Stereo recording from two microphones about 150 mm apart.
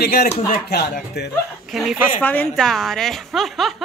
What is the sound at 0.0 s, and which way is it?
Speech, 90° left.